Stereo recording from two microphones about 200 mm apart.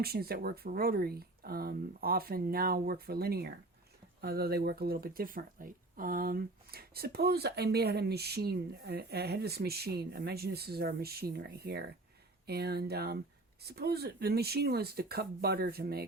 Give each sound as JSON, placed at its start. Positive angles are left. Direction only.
{"t": 0.0, "sound": "speech", "side_deg": -50}